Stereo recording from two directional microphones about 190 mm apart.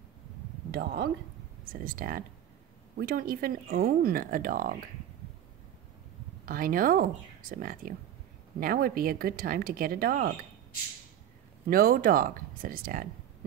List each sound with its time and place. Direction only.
0.7 s speech: 55° right (ahead or behind)
6.4 s speech: 50° right (ahead or behind)
11.7 s speech: 50° right (ahead or behind)